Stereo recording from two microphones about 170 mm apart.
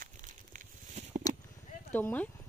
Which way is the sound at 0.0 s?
50° right (ahead or behind).